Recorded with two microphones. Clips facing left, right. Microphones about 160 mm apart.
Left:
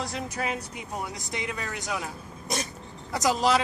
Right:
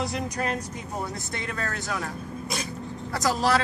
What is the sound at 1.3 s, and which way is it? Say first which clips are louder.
Speech: left 1 dB; 15° left (ahead or behind).